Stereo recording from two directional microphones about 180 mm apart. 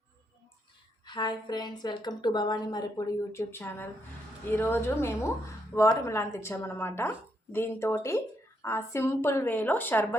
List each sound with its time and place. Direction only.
1.0 s a woman's voice: 25° left (ahead or behind)